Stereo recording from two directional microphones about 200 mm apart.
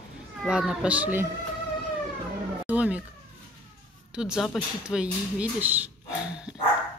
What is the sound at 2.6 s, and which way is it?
Speech, 5° right (ahead or behind).